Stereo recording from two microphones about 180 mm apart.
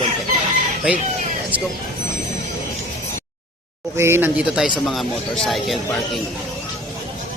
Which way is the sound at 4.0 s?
15° right (ahead or behind).